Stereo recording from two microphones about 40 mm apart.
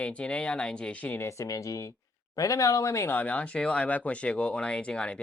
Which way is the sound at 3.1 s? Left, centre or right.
Left.